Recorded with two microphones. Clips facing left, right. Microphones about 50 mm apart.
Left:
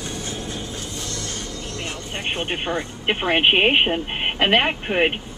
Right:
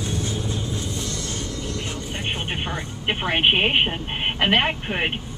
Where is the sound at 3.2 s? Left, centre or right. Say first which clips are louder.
Left 3 dB; left.